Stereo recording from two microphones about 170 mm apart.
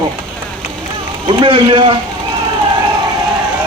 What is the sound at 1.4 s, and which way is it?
Speech, 30° right (ahead or behind).